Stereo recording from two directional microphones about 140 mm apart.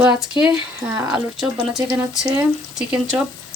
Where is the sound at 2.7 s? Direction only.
5° right (ahead or behind).